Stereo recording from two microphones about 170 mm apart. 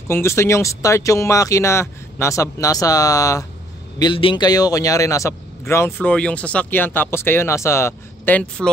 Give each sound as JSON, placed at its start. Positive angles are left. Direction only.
{"t": 0.1, "sound": "speech", "side_deg": 15}
{"t": 4.0, "sound": "speech", "side_deg": 30}